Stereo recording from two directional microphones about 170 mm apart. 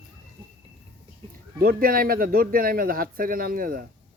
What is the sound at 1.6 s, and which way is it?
A man's voice, 60° right (ahead or behind).